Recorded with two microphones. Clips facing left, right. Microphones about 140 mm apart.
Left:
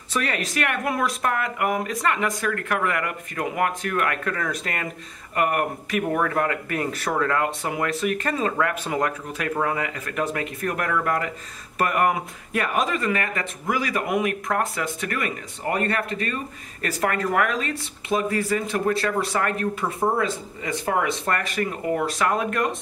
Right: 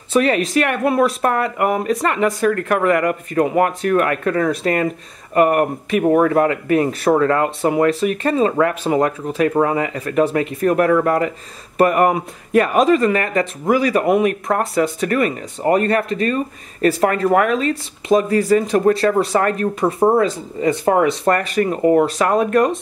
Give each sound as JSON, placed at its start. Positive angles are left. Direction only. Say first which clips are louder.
{"t": 0.1, "sound": "speech", "louder": "right 11 dB", "side_deg": -25}